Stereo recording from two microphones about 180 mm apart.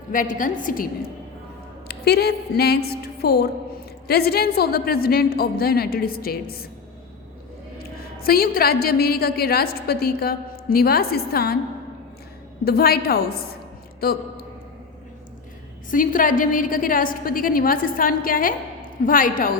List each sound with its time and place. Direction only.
0.1 s a woman's voice: 50° left (ahead or behind)
1.9 s a woman's voice: 60° left (ahead or behind)
7.8 s a woman's voice: 55° left (ahead or behind)
12.6 s a woman's voice: 55° left (ahead or behind)
15.9 s a woman's voice: 50° left (ahead or behind)